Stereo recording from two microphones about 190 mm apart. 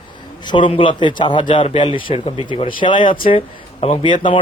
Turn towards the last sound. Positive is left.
turn(degrees=25)  # may be behind; listen again after turning